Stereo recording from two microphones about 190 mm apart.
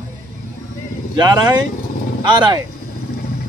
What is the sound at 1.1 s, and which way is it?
A man's voice, 20° right (ahead or behind).